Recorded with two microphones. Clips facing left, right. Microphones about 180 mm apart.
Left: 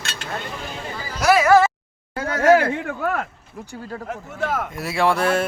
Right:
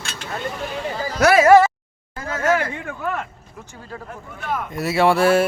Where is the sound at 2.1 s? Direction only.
70° left (ahead or behind).